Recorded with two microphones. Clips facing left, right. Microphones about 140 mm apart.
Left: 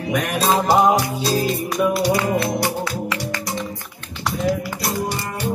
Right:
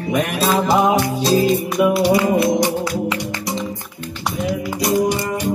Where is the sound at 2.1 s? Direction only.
20° right (ahead or behind).